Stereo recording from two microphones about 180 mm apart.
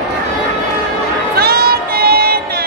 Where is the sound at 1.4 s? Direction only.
60° right (ahead or behind).